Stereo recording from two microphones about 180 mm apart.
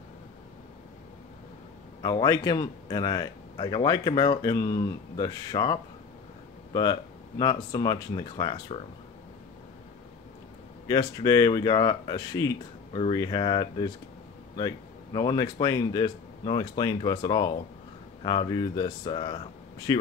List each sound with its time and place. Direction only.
2.0 s a man's voice: 25° left (ahead or behind)
10.9 s a man's voice: 20° left (ahead or behind)
15.1 s a man's voice: 25° left (ahead or behind)